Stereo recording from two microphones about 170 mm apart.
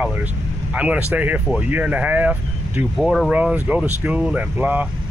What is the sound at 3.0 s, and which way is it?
Speech, centre (ahead or behind).